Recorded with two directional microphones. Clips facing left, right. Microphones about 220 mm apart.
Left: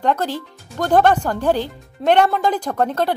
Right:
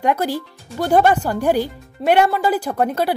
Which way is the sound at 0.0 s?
10° right (ahead or behind).